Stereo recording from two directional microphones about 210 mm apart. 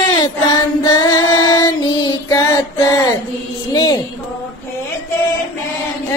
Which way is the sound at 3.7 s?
15° left (ahead or behind).